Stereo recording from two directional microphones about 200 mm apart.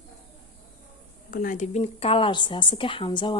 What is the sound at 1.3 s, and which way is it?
A woman's voice, 45° left (ahead or behind).